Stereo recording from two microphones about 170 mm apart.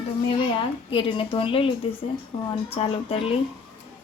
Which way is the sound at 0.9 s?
30° left (ahead or behind).